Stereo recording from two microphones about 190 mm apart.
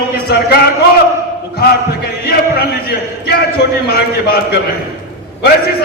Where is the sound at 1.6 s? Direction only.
55° left (ahead or behind).